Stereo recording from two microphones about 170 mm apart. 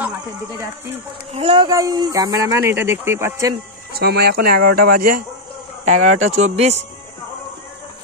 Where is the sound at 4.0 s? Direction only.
65° right (ahead or behind).